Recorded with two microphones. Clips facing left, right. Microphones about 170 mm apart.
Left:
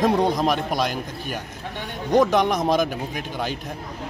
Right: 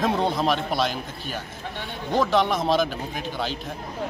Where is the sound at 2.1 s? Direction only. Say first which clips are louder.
Left 3 dB; 20° left (ahead or behind).